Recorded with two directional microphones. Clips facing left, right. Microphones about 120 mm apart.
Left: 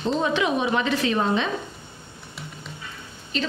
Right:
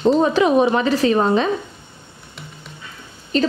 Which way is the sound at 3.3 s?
40° right (ahead or behind).